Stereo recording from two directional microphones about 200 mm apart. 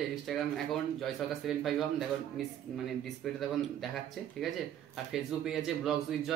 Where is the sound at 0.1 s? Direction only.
Centre (ahead or behind).